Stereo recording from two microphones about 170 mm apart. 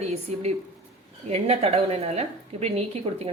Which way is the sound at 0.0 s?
40° right (ahead or behind).